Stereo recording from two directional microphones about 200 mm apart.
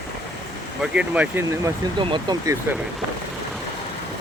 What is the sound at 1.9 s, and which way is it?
Speech, 20° right (ahead or behind).